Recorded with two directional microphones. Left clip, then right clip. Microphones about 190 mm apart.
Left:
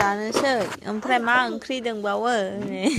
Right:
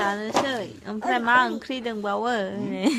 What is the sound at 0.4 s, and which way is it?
Speech, 25° left (ahead or behind).